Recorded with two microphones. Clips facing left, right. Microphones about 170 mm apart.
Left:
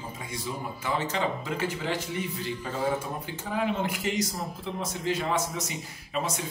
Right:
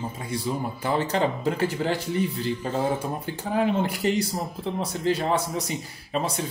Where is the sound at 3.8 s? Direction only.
35° right (ahead or behind).